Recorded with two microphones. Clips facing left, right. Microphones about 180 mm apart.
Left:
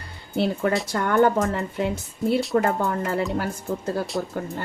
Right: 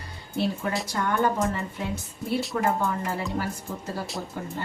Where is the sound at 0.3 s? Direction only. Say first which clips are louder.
Left 5 dB; 60° left (ahead or behind).